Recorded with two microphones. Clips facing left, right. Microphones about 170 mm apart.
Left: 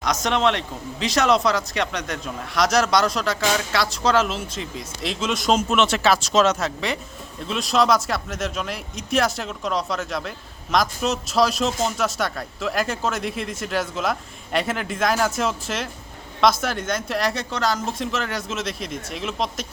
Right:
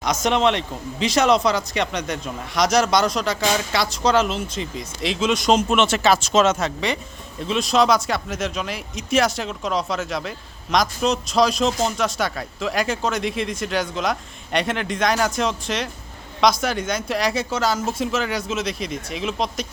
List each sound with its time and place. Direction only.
0.0 s speech: centre (ahead or behind)